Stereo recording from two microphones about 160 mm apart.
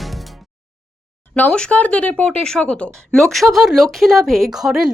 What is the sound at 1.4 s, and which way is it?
A woman's voice, 5° left (ahead or behind).